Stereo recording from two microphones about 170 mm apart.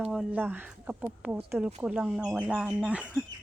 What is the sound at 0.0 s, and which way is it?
A woman's voice, 5° right (ahead or behind).